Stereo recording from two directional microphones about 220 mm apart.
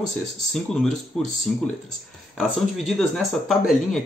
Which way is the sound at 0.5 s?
Centre (ahead or behind).